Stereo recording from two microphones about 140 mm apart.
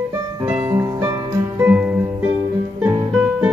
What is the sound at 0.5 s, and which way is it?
Music, 15° right (ahead or behind).